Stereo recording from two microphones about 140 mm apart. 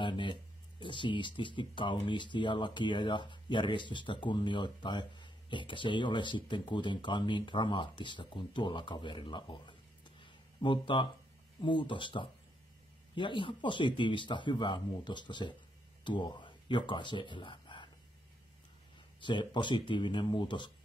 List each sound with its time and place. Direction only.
0.0 s speech: 35° left (ahead or behind)
19.2 s speech: 35° left (ahead or behind)